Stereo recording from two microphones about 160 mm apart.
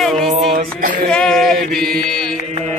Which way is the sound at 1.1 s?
5° left (ahead or behind).